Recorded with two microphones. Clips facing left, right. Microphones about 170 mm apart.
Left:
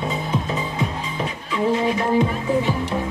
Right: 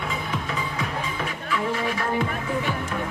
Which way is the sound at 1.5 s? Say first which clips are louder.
Left 7 dB; 20° left (ahead or behind).